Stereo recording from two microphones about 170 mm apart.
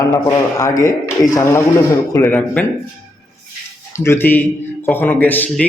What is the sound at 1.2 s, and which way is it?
A man's voice, 15° left (ahead or behind).